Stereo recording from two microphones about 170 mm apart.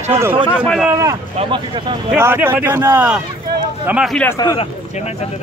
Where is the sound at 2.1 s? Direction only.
10° right (ahead or behind).